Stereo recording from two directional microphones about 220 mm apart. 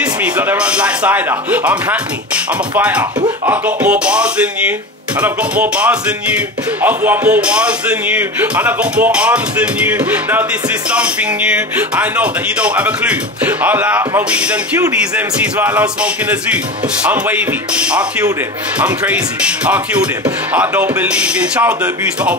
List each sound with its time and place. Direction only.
0.0 s speech: 10° right (ahead or behind)